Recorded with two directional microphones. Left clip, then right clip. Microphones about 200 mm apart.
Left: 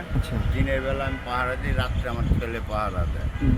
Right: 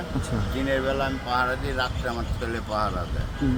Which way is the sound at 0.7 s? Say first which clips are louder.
Right 2 dB; 15° left (ahead or behind).